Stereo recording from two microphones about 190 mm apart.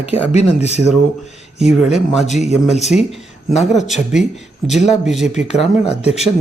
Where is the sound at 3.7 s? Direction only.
Centre (ahead or behind).